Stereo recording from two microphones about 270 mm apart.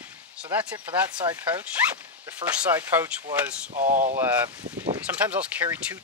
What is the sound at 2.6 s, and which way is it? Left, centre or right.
Speech, centre.